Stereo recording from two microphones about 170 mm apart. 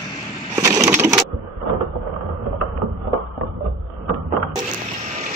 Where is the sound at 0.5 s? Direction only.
20° right (ahead or behind).